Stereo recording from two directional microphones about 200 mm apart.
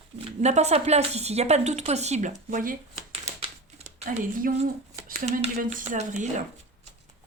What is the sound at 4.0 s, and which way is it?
A woman's voice, 35° right (ahead or behind).